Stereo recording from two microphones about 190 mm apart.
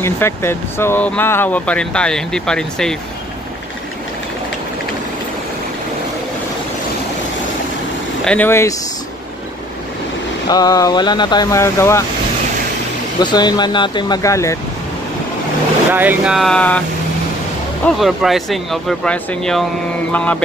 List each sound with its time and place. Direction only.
0.0 s speech: 15° left (ahead or behind)
8.2 s speech: 5° left (ahead or behind)
10.5 s speech: 20° left (ahead or behind)
13.2 s speech: 20° left (ahead or behind)
15.9 s speech: 10° right (ahead or behind)
17.8 s speech: centre (ahead or behind)